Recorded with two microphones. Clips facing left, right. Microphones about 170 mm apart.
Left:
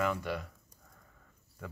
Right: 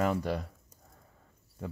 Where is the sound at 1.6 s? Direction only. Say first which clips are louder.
Right 5 dB; 30° right (ahead or behind).